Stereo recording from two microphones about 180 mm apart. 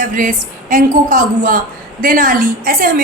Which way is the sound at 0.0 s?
45° right (ahead or behind).